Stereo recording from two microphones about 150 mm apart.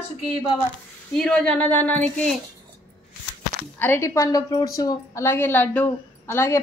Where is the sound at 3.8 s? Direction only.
15° left (ahead or behind).